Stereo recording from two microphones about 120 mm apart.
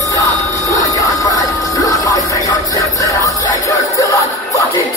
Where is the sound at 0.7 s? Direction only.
30° left (ahead or behind).